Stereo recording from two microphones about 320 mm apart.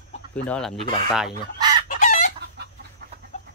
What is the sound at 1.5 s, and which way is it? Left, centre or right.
Chicken, centre.